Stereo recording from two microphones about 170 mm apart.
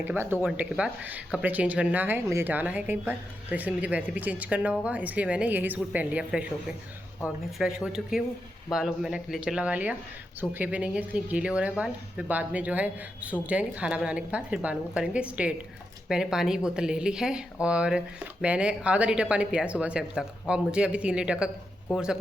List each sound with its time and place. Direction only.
0.0 s speech: 10° right (ahead or behind)